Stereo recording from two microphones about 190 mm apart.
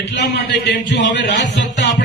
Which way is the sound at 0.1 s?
65° left (ahead or behind).